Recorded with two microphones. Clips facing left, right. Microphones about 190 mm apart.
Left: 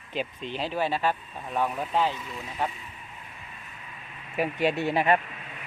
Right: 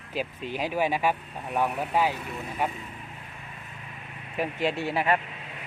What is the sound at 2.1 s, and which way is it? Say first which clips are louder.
Speech: right 3 dB; 60° right (ahead or behind).